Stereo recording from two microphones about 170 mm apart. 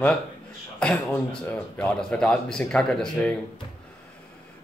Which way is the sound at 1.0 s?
10° left (ahead or behind).